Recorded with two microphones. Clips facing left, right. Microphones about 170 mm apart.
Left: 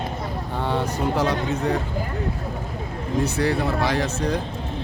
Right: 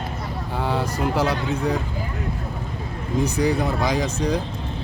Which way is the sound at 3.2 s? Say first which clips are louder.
Right 2 dB; 15° right (ahead or behind).